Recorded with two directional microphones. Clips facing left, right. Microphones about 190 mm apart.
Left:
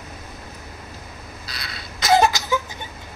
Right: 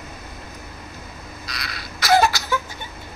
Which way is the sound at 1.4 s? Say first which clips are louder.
Right 3 dB; 25° left (ahead or behind).